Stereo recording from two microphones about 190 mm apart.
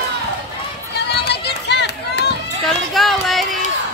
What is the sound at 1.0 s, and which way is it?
Run, 60° left (ahead or behind).